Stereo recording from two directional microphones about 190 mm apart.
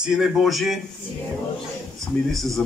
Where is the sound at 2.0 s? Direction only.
Centre (ahead or behind).